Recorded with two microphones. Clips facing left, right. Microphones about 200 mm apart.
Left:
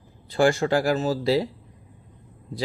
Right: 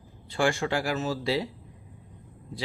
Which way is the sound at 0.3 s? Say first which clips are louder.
Left 6 dB; 40° left (ahead or behind).